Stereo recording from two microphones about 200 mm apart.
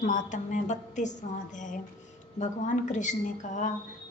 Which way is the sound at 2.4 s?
40° left (ahead or behind).